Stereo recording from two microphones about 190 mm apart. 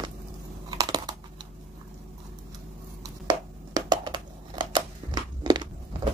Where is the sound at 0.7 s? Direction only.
20° right (ahead or behind).